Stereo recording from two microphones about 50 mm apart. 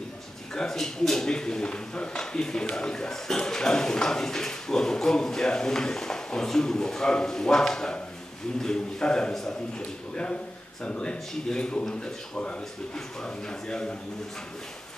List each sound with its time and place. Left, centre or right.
0.6 s speech: centre
9.8 s a man's voice: centre